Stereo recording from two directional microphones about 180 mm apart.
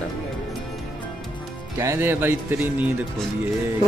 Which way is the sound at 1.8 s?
15° right (ahead or behind).